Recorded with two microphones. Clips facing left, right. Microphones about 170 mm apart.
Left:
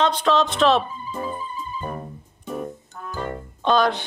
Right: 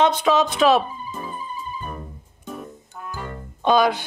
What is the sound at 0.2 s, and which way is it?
Speech, 5° right (ahead or behind).